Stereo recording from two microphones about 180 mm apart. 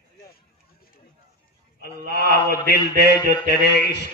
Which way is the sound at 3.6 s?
70° left (ahead or behind).